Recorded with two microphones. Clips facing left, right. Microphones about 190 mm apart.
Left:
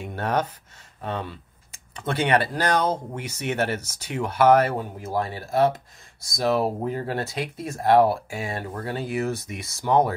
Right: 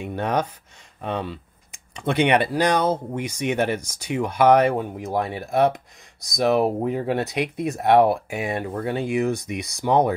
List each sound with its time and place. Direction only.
0.0 s speech: 10° right (ahead or behind)